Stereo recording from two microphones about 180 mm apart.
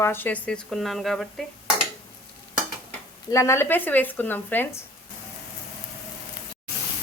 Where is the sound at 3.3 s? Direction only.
15° left (ahead or behind).